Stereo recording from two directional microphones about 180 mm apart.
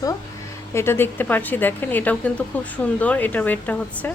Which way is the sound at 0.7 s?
15° left (ahead or behind).